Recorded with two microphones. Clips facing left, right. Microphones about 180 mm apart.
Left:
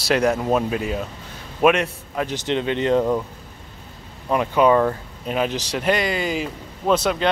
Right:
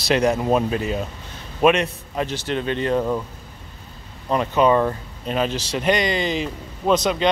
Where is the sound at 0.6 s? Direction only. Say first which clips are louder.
Right 1 dB; 5° left (ahead or behind).